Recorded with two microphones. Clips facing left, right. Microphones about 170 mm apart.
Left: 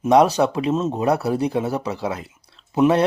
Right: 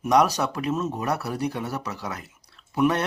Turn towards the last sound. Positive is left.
turn(degrees=25)  # may be behind; listen again after turning